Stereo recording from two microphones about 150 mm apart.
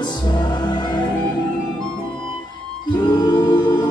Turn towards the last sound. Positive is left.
turn(degrees=30)  # may be behind; listen again after turning